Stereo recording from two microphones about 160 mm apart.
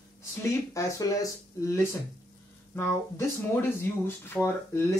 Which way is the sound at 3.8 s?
15° left (ahead or behind).